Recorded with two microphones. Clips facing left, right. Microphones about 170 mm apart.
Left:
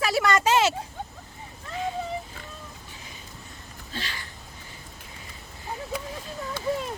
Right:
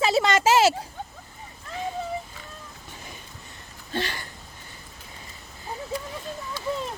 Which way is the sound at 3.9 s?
55° right (ahead or behind).